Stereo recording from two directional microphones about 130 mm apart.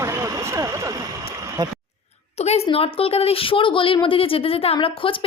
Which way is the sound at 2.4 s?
55° left (ahead or behind).